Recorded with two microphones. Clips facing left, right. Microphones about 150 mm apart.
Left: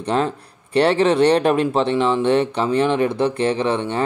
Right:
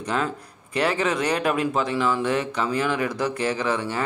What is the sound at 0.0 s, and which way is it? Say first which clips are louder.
Speech: left 6 dB; 30° left (ahead or behind).